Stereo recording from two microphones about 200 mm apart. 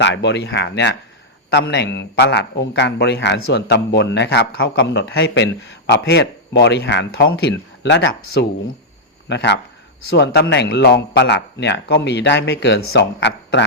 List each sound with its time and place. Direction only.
0.0 s a man's voice: 60° left (ahead or behind)